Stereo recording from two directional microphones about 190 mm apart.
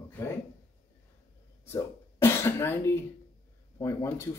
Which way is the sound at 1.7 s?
15° left (ahead or behind).